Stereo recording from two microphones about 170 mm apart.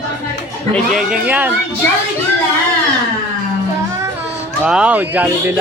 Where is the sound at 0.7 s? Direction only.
Centre (ahead or behind).